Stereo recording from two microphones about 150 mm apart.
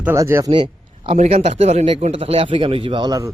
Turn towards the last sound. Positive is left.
turn(degrees=-25)  # may be behind; listen again after turning